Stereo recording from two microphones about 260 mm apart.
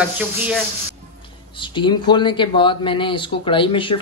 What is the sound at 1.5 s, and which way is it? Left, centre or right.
Speech, centre.